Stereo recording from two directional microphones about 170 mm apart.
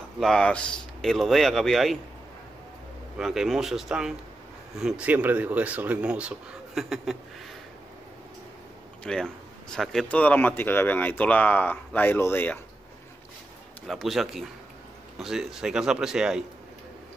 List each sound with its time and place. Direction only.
0.2 s speech: 5° left (ahead or behind)
3.2 s speech: centre (ahead or behind)
9.0 s speech: 5° left (ahead or behind)
13.8 s speech: centre (ahead or behind)